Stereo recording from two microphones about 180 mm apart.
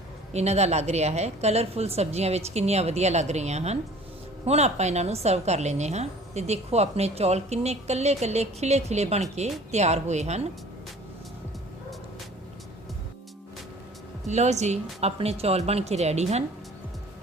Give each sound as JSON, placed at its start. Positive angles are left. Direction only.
{"t": 0.3, "sound": "a woman's voice", "side_deg": -35}
{"t": 14.3, "sound": "a woman's voice", "side_deg": -40}